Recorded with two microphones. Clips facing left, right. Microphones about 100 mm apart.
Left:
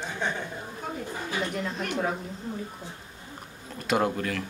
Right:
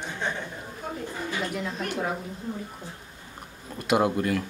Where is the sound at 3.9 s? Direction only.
5° right (ahead or behind).